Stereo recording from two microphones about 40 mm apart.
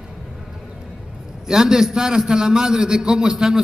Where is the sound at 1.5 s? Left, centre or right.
Centre.